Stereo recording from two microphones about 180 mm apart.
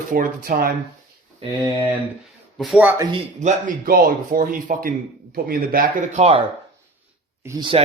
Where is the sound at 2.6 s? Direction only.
5° right (ahead or behind).